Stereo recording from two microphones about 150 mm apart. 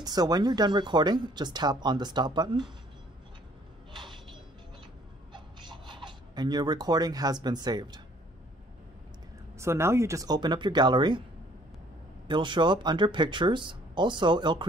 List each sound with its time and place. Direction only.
0.0 s speech: 25° right (ahead or behind)
5.3 s filing: 30° right (ahead or behind)
9.6 s speech: 15° right (ahead or behind)
12.3 s speech: 30° right (ahead or behind)